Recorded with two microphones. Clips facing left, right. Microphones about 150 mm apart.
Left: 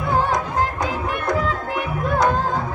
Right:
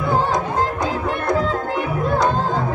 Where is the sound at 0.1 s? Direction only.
30° right (ahead or behind).